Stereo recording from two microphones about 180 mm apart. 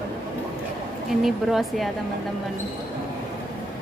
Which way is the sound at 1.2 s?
Centre (ahead or behind).